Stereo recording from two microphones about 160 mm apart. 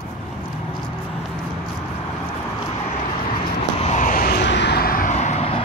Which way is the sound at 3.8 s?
45° left (ahead or behind).